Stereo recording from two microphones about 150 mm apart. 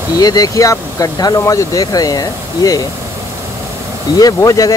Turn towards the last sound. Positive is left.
turn(degrees=25)  # may be behind; listen again after turning